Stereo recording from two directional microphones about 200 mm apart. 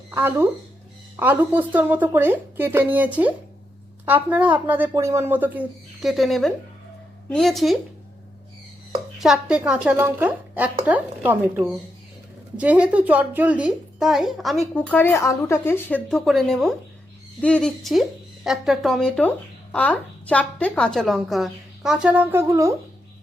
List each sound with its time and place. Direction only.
0.1 s a woman's voice: 10° right (ahead or behind)
9.1 s a woman's voice: centre (ahead or behind)